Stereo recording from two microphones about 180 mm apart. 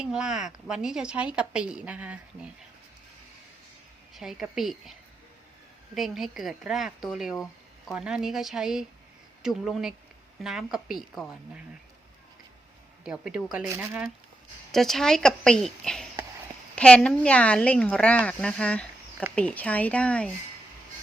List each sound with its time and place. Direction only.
0.0 s a woman's voice: 5° right (ahead or behind)
4.1 s a woman's voice: centre (ahead or behind)
13.1 s a woman's voice: 5° right (ahead or behind)
14.7 s a woman's voice: centre (ahead or behind)